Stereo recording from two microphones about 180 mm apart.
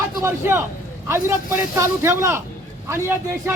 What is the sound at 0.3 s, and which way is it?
Speech, 15° right (ahead or behind).